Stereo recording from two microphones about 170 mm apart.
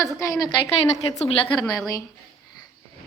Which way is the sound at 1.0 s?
35° left (ahead or behind).